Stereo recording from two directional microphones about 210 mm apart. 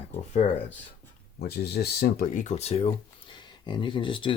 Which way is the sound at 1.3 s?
50° left (ahead or behind).